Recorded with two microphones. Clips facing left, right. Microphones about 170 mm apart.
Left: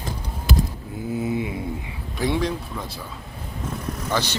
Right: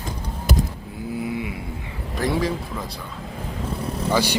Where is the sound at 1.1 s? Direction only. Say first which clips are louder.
Left 2 dB; 20° left (ahead or behind).